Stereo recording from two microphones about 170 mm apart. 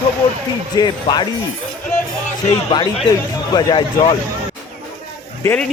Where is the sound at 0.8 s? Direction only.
25° left (ahead or behind).